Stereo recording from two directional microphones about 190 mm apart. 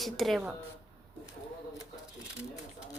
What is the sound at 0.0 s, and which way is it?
Speech, centre (ahead or behind).